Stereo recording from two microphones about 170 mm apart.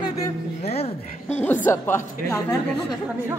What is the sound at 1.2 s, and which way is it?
Speech, 10° left (ahead or behind).